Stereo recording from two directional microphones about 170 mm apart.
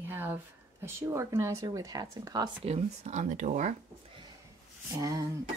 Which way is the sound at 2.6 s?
40° right (ahead or behind).